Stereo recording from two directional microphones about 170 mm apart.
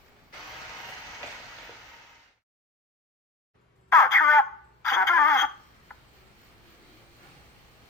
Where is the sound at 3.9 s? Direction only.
15° left (ahead or behind).